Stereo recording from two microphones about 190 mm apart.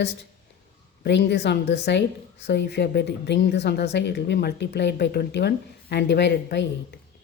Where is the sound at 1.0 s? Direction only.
65° left (ahead or behind).